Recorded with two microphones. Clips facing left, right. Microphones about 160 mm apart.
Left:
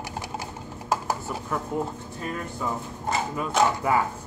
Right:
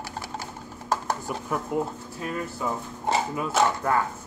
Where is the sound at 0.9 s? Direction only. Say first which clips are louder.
Even; 5° left (ahead or behind).